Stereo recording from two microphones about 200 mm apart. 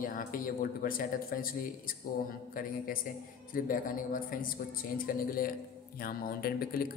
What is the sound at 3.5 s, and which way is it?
A man's voice, 45° left (ahead or behind).